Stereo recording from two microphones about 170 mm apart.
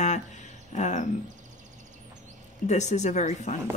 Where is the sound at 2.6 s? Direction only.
45° left (ahead or behind).